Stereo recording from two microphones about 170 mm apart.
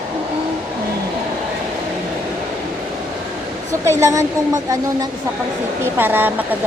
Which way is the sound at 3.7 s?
20° right (ahead or behind).